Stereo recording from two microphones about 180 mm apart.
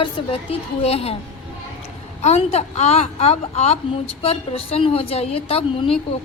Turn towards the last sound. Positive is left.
turn(degrees=30)  # may be behind; listen again after turning